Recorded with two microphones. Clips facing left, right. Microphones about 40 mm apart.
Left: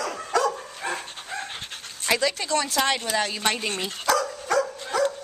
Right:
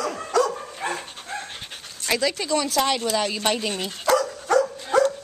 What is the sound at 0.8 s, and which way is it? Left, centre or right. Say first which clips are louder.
Dog: right 2 dB; right.